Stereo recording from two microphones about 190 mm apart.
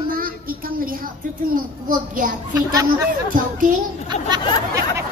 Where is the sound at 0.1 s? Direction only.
50° right (ahead or behind).